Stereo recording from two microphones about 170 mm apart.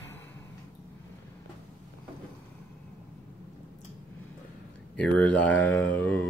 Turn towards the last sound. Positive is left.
turn(degrees=10)  # may be behind; listen again after turning